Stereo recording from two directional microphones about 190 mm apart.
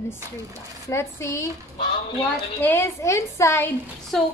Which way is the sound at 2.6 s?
15° left (ahead or behind).